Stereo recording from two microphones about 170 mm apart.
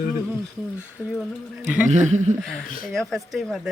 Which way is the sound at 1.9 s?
45° right (ahead or behind).